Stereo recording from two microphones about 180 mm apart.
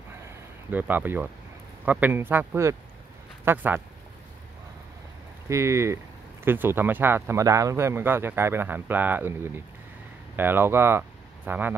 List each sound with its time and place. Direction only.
0.7 s speech: 10° right (ahead or behind)
5.5 s speech: 15° right (ahead or behind)